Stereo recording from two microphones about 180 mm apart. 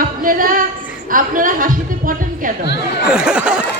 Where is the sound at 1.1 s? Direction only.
50° right (ahead or behind).